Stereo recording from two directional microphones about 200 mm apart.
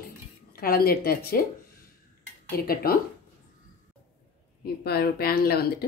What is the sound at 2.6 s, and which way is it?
Speech, 50° left (ahead or behind).